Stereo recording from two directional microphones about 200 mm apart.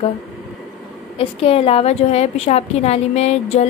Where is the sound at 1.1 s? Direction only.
30° left (ahead or behind).